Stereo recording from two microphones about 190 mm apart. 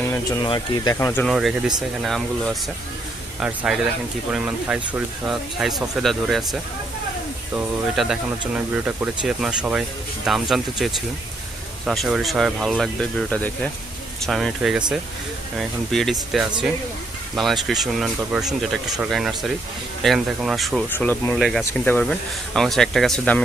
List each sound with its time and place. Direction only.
0.0 s a sound: 15° left (ahead or behind)
0.4 s speech: 25° left (ahead or behind)
0.9 s speech: 10° left (ahead or behind)
1.3 s speech: centre (ahead or behind)
20.9 s speech: 10° left (ahead or behind)